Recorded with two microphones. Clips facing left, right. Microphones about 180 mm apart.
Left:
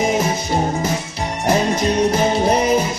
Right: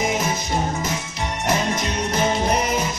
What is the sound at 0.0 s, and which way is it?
Music, 30° left (ahead or behind).